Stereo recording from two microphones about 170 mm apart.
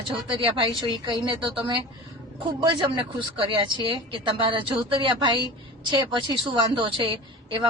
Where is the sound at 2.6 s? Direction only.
30° right (ahead or behind).